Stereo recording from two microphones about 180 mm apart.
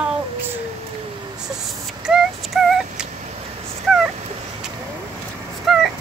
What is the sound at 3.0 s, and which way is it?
Telephone dialing, 40° right (ahead or behind).